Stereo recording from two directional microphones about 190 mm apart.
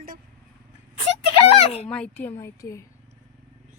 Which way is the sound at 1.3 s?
30° left (ahead or behind).